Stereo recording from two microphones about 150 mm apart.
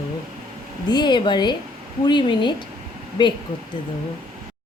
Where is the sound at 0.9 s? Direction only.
30° left (ahead or behind).